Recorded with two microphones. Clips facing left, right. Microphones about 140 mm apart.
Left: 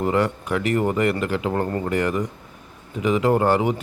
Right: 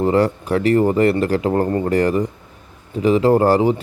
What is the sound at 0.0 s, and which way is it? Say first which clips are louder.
Speech: right 5 dB; 35° right (ahead or behind).